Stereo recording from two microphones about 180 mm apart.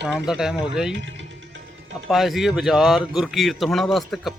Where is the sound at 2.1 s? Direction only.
Centre (ahead or behind).